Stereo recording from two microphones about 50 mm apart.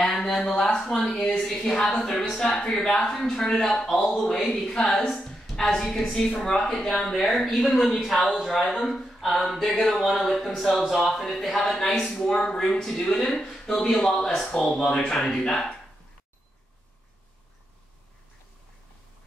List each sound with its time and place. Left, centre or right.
0.0 s a woman's voice: centre
12.3 s a woman's voice: centre